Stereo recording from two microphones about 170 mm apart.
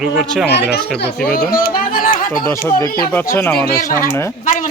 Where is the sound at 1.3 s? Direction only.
60° left (ahead or behind).